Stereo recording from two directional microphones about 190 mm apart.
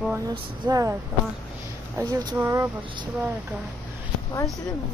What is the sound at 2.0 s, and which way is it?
Speech, 20° right (ahead or behind).